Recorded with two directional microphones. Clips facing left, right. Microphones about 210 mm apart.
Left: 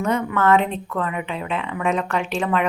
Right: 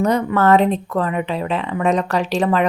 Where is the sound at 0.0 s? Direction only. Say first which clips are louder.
Right 4 dB; 35° right (ahead or behind).